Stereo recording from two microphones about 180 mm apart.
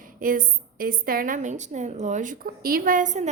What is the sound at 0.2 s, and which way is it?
A woman's voice, 50° right (ahead or behind).